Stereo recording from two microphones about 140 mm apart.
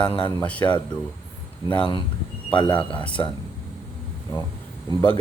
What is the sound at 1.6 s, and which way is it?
Speech, 40° left (ahead or behind).